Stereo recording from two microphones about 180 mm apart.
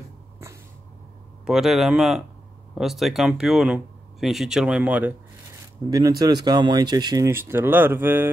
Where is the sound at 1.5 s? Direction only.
Centre (ahead or behind).